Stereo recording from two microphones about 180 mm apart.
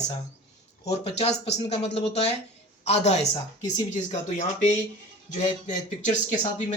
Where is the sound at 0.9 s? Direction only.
35° left (ahead or behind).